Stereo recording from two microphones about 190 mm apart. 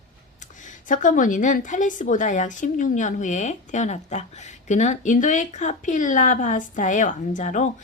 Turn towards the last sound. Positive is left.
turn(degrees=40)  # may be behind; listen again after turning